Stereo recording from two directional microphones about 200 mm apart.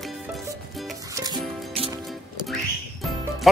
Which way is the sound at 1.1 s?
20° right (ahead or behind).